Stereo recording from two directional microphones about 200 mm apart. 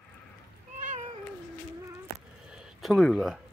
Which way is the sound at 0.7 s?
40° right (ahead or behind).